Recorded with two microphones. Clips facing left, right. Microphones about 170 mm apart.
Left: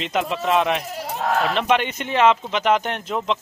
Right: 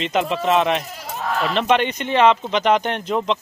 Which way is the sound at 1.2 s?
60° left (ahead or behind).